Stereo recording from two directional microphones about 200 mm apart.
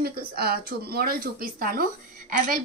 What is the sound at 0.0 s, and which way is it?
A woman's voice, 50° right (ahead or behind).